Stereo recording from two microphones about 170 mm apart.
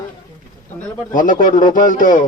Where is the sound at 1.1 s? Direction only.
50° left (ahead or behind).